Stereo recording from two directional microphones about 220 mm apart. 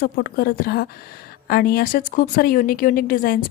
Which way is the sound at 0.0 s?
45° left (ahead or behind).